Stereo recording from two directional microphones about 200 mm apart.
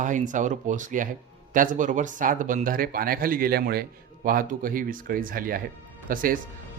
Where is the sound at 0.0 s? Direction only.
40° right (ahead or behind).